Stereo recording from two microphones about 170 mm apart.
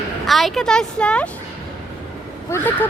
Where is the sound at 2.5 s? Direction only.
10° left (ahead or behind).